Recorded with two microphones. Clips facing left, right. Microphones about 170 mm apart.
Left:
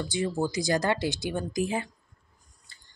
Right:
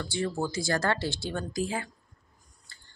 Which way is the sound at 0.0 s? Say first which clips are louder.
Left 2 dB; 15° left (ahead or behind).